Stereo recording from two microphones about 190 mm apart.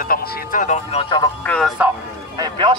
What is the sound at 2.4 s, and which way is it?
Speech, 25° right (ahead or behind).